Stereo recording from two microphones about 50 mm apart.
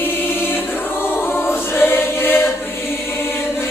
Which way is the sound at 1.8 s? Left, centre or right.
Left.